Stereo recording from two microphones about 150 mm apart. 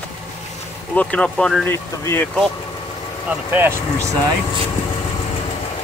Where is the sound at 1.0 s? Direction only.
5° left (ahead or behind).